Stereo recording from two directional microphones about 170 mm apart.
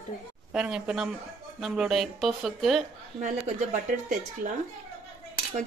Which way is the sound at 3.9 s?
50° right (ahead or behind).